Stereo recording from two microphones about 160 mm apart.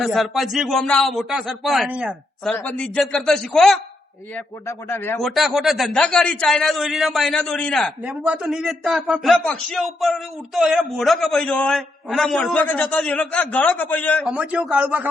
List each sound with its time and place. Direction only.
0.0 s a man's voice: centre (ahead or behind)
4.4 s a man's voice: 15° left (ahead or behind)
5.2 s a man's voice: centre (ahead or behind)
9.3 s a man's voice: 5° left (ahead or behind)
14.3 s a man's voice: 5° right (ahead or behind)